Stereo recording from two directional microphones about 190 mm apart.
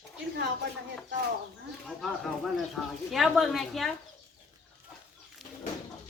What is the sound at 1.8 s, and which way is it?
Speech, centre (ahead or behind).